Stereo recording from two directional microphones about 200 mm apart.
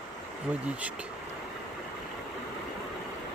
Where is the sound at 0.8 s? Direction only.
5° right (ahead or behind).